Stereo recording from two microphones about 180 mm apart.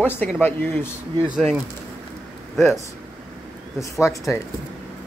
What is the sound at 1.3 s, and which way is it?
Speech, 5° right (ahead or behind).